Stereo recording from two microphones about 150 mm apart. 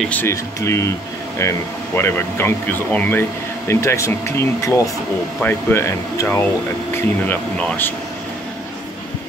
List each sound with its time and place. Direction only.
0.1 s speech: 15° left (ahead or behind)